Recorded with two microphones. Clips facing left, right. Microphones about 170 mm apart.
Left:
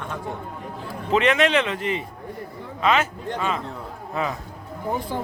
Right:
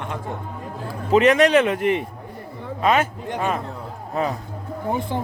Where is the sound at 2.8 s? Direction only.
45° right (ahead or behind).